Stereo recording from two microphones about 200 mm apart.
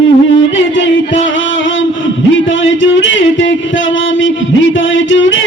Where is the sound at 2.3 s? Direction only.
70° left (ahead or behind).